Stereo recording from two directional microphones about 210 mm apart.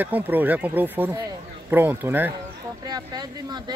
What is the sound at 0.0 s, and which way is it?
Speech, 10° right (ahead or behind).